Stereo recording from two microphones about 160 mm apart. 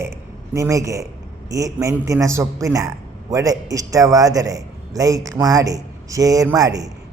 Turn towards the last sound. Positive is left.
turn(degrees=-20)  # may be behind; listen again after turning